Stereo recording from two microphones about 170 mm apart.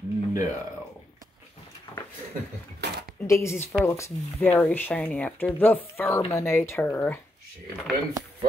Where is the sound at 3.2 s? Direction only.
15° left (ahead or behind).